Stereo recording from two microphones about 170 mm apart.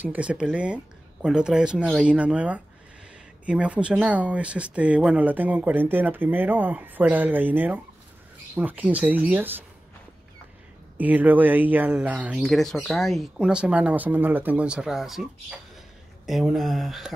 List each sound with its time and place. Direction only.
0.0 s speech: 10° right (ahead or behind)
11.0 s speech: 10° right (ahead or behind)
16.3 s speech: centre (ahead or behind)